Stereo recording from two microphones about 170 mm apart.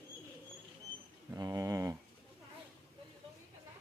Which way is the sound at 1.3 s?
20° right (ahead or behind).